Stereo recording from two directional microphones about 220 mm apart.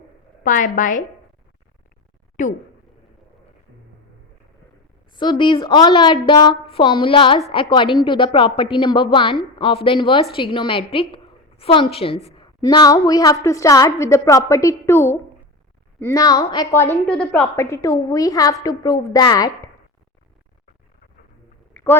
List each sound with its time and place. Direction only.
0.4 s a woman's voice: 35° left (ahead or behind)
2.4 s a woman's voice: 35° left (ahead or behind)
5.1 s a woman's voice: 20° left (ahead or behind)
21.7 s a sound: 10° left (ahead or behind)